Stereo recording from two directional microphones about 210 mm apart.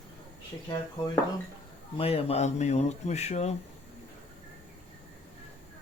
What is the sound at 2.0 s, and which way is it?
Speech, 30° left (ahead or behind).